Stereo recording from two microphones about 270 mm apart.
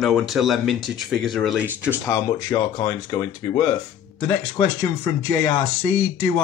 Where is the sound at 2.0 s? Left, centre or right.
Centre.